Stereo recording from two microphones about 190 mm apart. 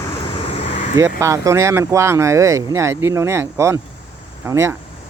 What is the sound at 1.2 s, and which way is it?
Speech, 15° right (ahead or behind).